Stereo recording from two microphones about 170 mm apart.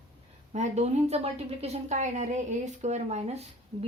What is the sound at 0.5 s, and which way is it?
A woman's voice, 40° right (ahead or behind).